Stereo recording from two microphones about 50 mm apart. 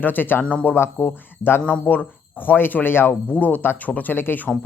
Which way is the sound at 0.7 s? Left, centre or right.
Left.